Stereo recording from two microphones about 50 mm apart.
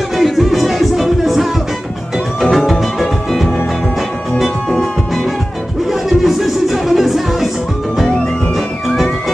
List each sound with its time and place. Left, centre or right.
0.2 s music: centre
5.9 s music: centre
8.5 s music: centre